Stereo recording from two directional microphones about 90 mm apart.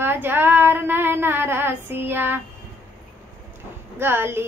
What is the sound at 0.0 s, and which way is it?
Child singing, 25° right (ahead or behind).